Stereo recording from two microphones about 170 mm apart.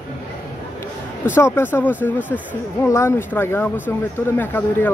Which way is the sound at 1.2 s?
15° left (ahead or behind).